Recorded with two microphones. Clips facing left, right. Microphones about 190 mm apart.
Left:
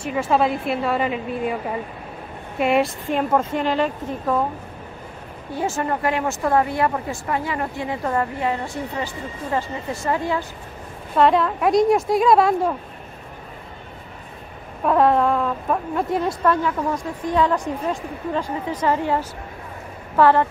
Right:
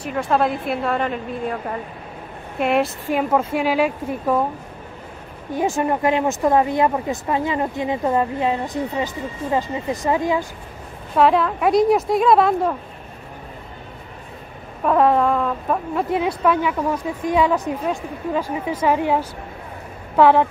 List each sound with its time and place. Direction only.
0.0 s a woman's voice: centre (ahead or behind)
5.5 s speech: 15° right (ahead or behind)
11.1 s speech: centre (ahead or behind)
14.9 s a woman's voice: centre (ahead or behind)